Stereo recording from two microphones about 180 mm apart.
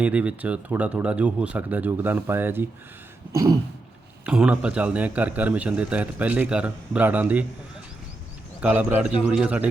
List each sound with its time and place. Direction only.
0.0 s a man's voice: 10° right (ahead or behind)
4.3 s a man's voice: 5° right (ahead or behind)
8.6 s a man's voice: 10° right (ahead or behind)